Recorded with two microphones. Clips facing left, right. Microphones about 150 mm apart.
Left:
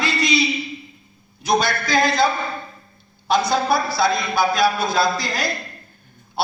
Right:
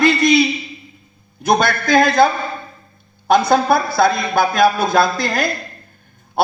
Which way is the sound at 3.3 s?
50° right (ahead or behind).